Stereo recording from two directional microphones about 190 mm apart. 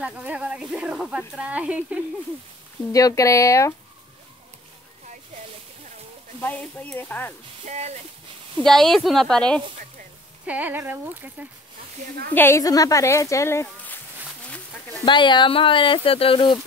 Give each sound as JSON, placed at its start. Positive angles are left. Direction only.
{"t": 0.0, "sound": "speech", "side_deg": -5}
{"t": 2.9, "sound": "speech", "side_deg": 20}
{"t": 6.4, "sound": "speech", "side_deg": 10}
{"t": 7.6, "sound": "speech", "side_deg": -35}
{"t": 8.5, "sound": "speech", "side_deg": 0}
{"t": 10.4, "sound": "speech", "side_deg": -10}
{"t": 12.4, "sound": "speech", "side_deg": 15}
{"t": 15.0, "sound": "speech", "side_deg": 25}